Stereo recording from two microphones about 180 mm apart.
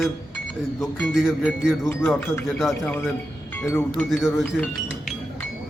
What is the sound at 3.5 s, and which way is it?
Speech, 10° left (ahead or behind).